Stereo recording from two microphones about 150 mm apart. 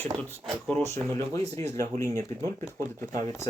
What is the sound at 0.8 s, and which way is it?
Speech, 20° left (ahead or behind).